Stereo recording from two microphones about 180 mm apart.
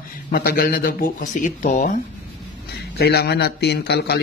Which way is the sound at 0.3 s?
55° left (ahead or behind).